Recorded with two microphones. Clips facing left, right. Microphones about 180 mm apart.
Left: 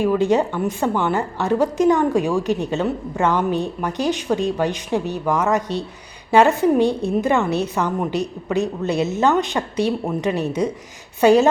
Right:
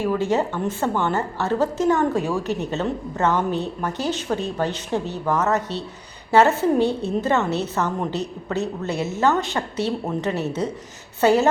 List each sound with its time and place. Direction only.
0.0 s a woman's voice: 15° left (ahead or behind)